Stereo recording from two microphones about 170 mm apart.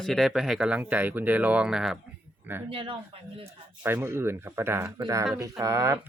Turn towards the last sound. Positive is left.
turn(degrees=-20)  # may be behind; listen again after turning